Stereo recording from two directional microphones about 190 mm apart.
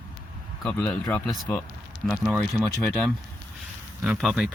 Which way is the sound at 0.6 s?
5° left (ahead or behind).